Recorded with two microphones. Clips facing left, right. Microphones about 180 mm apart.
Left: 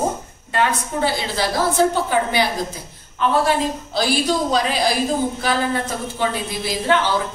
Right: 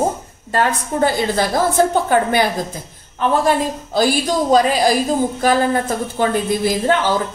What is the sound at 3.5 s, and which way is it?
Speech, 45° right (ahead or behind).